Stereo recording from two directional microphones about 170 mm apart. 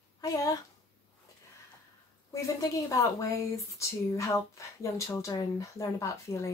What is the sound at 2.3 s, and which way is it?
Speech, 20° left (ahead or behind).